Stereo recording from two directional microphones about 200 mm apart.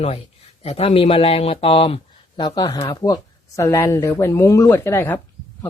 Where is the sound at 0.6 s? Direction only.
30° left (ahead or behind).